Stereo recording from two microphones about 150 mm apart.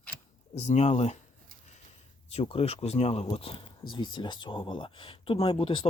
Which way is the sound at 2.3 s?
40° left (ahead or behind).